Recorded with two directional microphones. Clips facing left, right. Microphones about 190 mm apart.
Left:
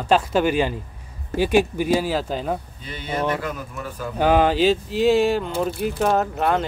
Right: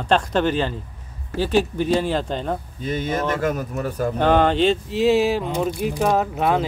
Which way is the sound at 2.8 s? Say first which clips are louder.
Right 3 dB; 45° right (ahead or behind).